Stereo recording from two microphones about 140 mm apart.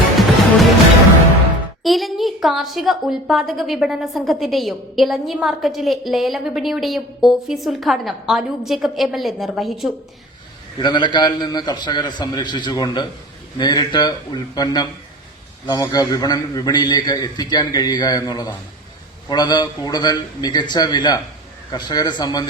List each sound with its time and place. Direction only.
1.8 s a woman's voice: centre (ahead or behind)
10.8 s a man's voice: 30° left (ahead or behind)